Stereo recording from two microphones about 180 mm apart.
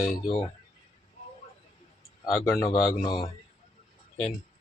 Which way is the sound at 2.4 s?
15° left (ahead or behind).